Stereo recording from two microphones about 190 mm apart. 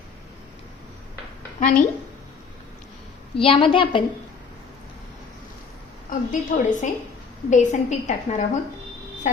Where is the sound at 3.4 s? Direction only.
30° left (ahead or behind).